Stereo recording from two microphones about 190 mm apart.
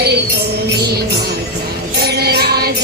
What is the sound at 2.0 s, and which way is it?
Music, 55° right (ahead or behind).